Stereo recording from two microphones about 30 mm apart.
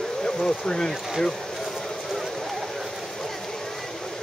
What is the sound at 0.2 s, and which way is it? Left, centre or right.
Speech, centre.